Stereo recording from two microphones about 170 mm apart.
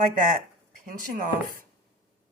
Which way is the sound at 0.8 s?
50° right (ahead or behind).